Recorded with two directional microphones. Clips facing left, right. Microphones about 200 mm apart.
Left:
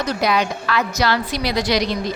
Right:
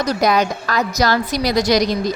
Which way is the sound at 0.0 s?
40° right (ahead or behind).